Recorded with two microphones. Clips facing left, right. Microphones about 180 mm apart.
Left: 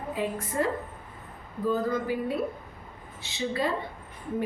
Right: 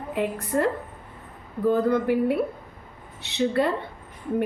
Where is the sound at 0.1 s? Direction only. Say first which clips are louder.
Right 6 dB; 65° right (ahead or behind).